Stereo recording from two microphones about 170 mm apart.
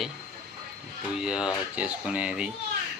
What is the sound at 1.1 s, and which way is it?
Speech, 5° right (ahead or behind).